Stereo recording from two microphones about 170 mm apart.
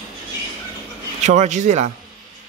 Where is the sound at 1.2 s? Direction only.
45° right (ahead or behind).